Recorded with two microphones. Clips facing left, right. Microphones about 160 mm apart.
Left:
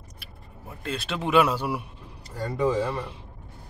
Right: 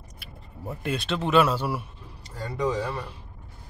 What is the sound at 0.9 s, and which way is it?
Speech, 10° left (ahead or behind).